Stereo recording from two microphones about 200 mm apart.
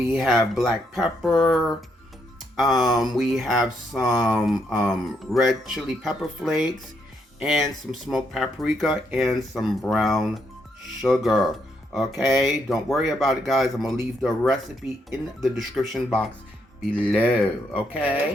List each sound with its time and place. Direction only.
0.0 s speech: centre (ahead or behind)
2.8 s speech: centre (ahead or behind)